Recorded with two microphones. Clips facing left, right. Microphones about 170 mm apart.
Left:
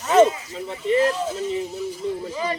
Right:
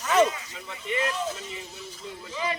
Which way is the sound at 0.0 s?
25° left (ahead or behind).